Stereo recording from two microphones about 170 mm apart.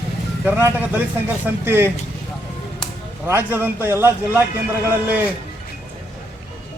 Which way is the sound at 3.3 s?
10° right (ahead or behind).